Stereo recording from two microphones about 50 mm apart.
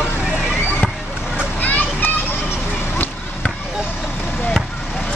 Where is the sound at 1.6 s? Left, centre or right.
Left.